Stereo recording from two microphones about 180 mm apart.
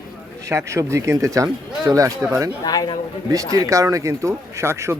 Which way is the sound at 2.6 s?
25° left (ahead or behind).